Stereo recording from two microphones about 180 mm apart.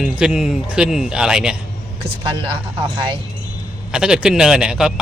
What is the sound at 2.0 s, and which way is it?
Speech, 30° right (ahead or behind).